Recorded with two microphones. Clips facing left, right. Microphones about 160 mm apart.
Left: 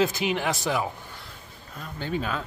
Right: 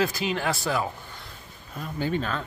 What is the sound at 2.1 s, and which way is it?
Speech, 5° left (ahead or behind).